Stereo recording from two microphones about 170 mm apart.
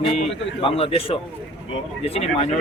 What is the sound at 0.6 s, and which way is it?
A man's voice, 35° left (ahead or behind).